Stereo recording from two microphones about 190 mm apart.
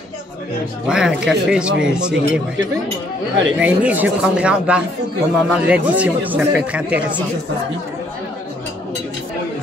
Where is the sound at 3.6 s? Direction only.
10° right (ahead or behind).